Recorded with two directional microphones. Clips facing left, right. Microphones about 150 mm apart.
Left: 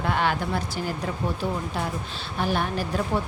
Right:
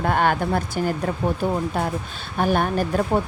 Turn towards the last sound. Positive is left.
turn(degrees=-50)  # may be behind; listen again after turning